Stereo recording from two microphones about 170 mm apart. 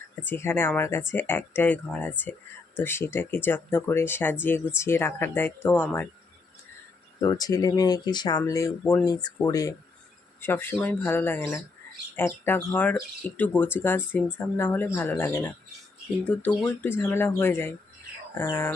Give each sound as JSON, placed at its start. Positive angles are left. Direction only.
{"t": 0.3, "sound": "speech", "side_deg": 15}
{"t": 7.2, "sound": "speech", "side_deg": 20}